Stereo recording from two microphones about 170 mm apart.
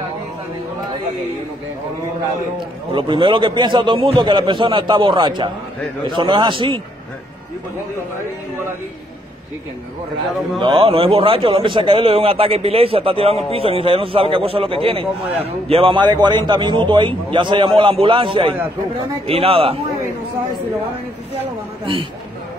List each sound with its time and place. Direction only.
2.9 s a man's voice: 30° right (ahead or behind)
10.6 s a man's voice: 30° right (ahead or behind)